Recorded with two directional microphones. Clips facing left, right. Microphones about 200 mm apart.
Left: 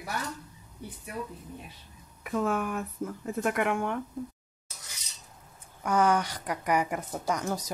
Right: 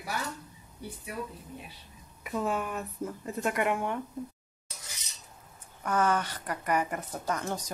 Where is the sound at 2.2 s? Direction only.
5° right (ahead or behind).